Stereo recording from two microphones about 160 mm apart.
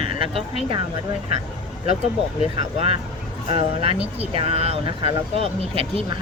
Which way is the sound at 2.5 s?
40° right (ahead or behind).